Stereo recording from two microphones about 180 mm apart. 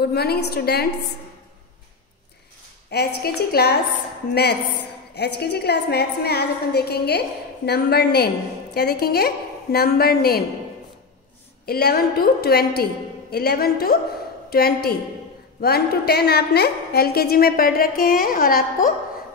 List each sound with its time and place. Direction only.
0.0 s a woman's voice: 60° left (ahead or behind)
2.9 s a woman's voice: 60° left (ahead or behind)
11.6 s a woman's voice: 60° left (ahead or behind)